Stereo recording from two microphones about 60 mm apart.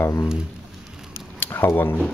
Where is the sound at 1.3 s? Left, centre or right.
Left.